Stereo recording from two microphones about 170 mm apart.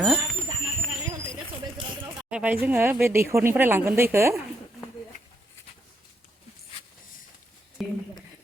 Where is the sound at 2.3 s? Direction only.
10° right (ahead or behind).